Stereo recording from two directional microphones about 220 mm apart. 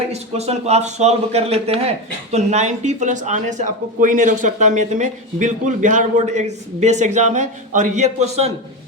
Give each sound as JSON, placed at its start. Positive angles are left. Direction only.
{"t": 0.1, "sound": "speech", "side_deg": -30}